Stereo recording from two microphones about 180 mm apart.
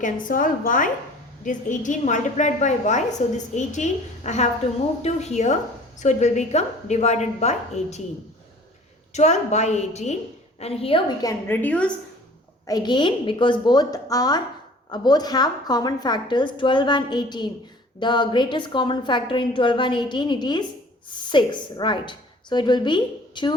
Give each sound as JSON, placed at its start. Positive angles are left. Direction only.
{"t": 0.0, "sound": "a woman's voice", "side_deg": 50}
{"t": 9.1, "sound": "a woman's voice", "side_deg": 40}
{"t": 12.6, "sound": "a woman's voice", "side_deg": 25}